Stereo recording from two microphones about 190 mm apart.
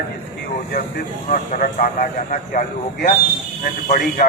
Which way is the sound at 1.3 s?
40° left (ahead or behind).